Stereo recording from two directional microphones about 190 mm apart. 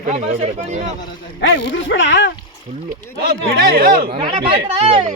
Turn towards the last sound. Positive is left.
turn(degrees=-30)  # may be behind; listen again after turning